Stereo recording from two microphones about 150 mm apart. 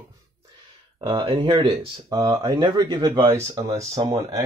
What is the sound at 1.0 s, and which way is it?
Speech, 30° right (ahead or behind).